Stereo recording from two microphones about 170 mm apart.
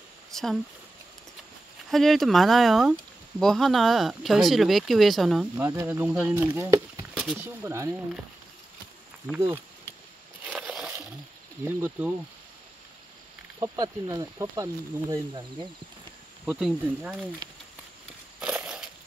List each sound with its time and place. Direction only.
0.3 s a sound: centre (ahead or behind)
1.9 s speech: centre (ahead or behind)
5.6 s speech: 15° right (ahead or behind)
9.3 s speech: 5° left (ahead or behind)
10.4 s a sound: 5° right (ahead or behind)
11.6 s speech: 10° right (ahead or behind)
13.6 s speech: 20° right (ahead or behind)
16.4 s speech: 5° right (ahead or behind)
18.4 s a sound: 5° right (ahead or behind)